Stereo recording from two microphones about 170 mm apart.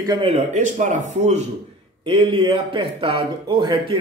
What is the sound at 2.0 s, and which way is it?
Speech, 30° right (ahead or behind).